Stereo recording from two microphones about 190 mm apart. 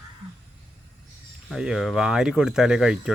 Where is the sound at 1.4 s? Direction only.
Centre (ahead or behind).